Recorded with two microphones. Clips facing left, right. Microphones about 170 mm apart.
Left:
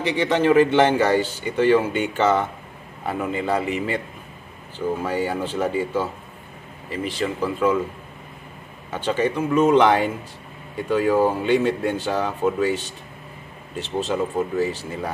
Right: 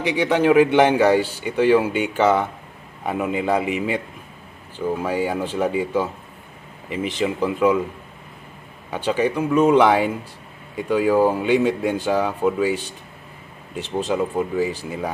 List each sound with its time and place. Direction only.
0.0 s speech: 10° right (ahead or behind)
8.9 s speech: 10° right (ahead or behind)